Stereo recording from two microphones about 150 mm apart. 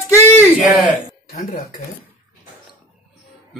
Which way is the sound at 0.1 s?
15° left (ahead or behind).